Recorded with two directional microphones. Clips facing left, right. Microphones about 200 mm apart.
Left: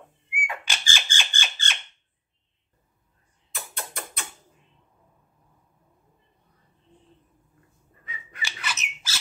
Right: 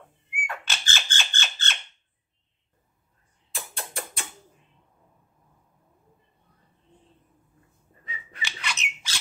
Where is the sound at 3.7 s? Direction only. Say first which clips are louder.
Right 1 dB; 30° right (ahead or behind).